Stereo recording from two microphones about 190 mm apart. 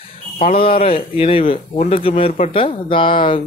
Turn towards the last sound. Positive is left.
turn(degrees=25)  # may be behind; listen again after turning